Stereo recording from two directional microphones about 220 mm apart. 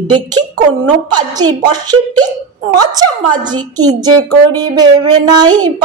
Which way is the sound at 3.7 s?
20° right (ahead or behind).